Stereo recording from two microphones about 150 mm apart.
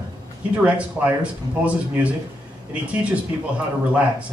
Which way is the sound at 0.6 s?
10° right (ahead or behind).